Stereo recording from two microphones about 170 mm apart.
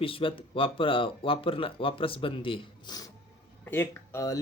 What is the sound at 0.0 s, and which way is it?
Speech, 30° left (ahead or behind).